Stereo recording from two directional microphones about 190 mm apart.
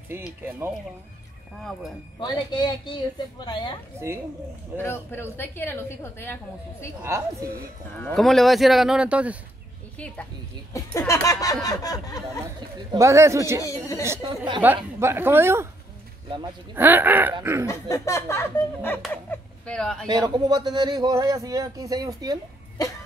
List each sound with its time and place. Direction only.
0.1 s speech: 10° right (ahead or behind)
1.6 s speech: centre (ahead or behind)
2.1 s speech: 25° left (ahead or behind)
4.7 s a woman's voice: 10° left (ahead or behind)
7.0 s speech: 15° right (ahead or behind)
8.0 s speech: centre (ahead or behind)
9.9 s a woman's voice: 5° left (ahead or behind)
12.7 s speech: 20° right (ahead or behind)
13.6 s a woman's voice: 15° left (ahead or behind)
14.2 s speech: 25° right (ahead or behind)
14.6 s speech: 10° right (ahead or behind)
16.7 s speech: 10° right (ahead or behind)
17.6 s a woman's voice: 15° left (ahead or behind)
20.1 s speech: 20° right (ahead or behind)